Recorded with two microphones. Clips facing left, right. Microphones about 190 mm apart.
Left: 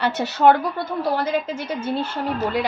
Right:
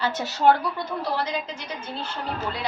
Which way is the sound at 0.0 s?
65° left (ahead or behind).